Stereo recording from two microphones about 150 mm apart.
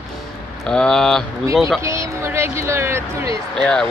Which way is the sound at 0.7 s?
5° left (ahead or behind).